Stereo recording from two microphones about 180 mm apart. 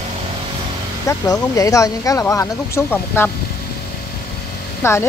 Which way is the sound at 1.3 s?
20° left (ahead or behind).